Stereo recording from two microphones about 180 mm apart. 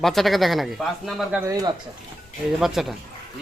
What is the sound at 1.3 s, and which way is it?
Speech, 15° right (ahead or behind).